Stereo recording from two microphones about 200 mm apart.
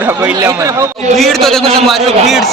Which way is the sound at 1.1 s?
Centre (ahead or behind).